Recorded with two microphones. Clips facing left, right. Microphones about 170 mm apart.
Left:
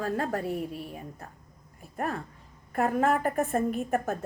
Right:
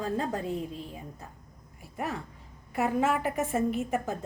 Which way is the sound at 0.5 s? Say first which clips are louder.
Left 1 dB; 10° left (ahead or behind).